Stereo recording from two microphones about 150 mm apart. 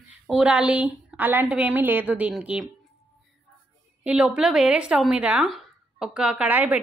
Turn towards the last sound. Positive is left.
turn(degrees=-10)  # may be behind; listen again after turning